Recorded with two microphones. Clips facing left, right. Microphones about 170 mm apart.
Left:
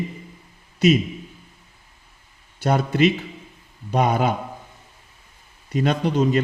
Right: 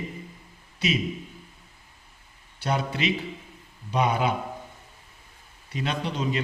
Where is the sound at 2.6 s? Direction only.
45° left (ahead or behind).